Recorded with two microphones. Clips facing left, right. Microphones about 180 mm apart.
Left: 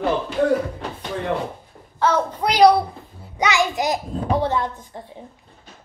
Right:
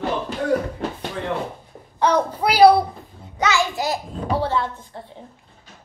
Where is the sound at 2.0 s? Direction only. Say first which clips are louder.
Right 1 dB; 15° right (ahead or behind).